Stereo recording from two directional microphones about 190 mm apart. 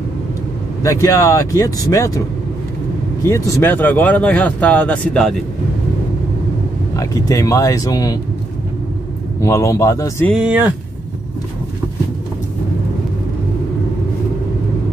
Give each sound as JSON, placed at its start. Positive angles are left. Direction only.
{"t": 0.8, "sound": "speech", "side_deg": 15}
{"t": 3.3, "sound": "speech", "side_deg": 15}
{"t": 7.0, "sound": "speech", "side_deg": 20}
{"t": 9.4, "sound": "speech", "side_deg": 15}
{"t": 10.3, "sound": "speech", "side_deg": -5}